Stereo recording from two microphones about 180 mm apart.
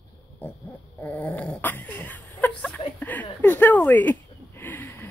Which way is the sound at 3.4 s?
10° left (ahead or behind).